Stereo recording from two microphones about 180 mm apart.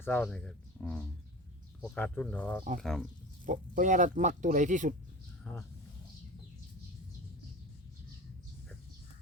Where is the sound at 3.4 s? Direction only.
45° right (ahead or behind).